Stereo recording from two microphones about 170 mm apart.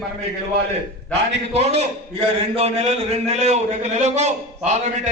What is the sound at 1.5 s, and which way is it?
A man's voice, 40° right (ahead or behind).